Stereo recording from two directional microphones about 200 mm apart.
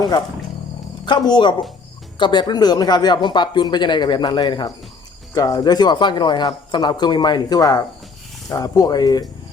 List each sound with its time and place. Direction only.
1.0 s speech: 20° left (ahead or behind)